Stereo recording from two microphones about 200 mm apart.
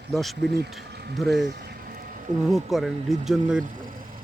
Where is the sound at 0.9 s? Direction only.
55° right (ahead or behind).